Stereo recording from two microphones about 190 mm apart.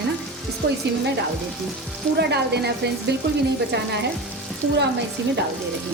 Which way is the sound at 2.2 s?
60° right (ahead or behind).